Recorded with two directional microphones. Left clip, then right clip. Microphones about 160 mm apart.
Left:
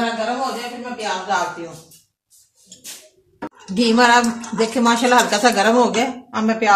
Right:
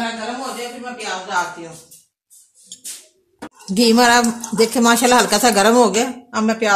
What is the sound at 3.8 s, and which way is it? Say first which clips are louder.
A woman's voice: right 1 dB; 75° right (ahead or behind).